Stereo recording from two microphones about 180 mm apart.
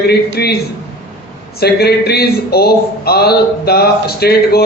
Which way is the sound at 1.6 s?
60° left (ahead or behind).